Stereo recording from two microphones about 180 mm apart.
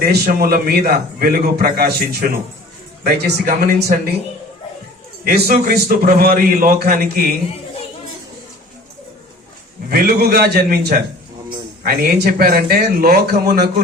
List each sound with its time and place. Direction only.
0.0 s a man's voice: 55° right (ahead or behind)
5.2 s a man's voice: 55° right (ahead or behind)
9.9 s a man's voice: 60° right (ahead or behind)